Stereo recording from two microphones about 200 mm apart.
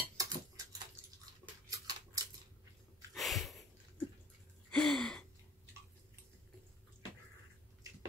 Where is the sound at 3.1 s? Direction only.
Centre (ahead or behind).